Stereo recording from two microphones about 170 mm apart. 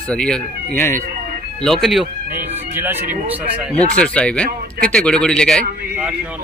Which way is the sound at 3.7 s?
5° left (ahead or behind).